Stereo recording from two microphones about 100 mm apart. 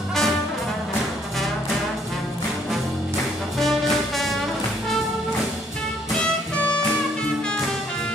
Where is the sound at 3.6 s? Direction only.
Centre (ahead or behind).